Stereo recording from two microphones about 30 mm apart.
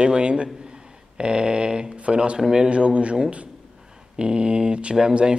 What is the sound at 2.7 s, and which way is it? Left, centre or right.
Speech, right.